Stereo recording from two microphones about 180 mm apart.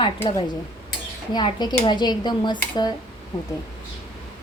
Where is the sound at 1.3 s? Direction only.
25° left (ahead or behind).